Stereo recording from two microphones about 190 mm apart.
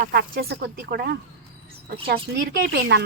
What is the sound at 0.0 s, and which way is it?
Speech, 60° right (ahead or behind).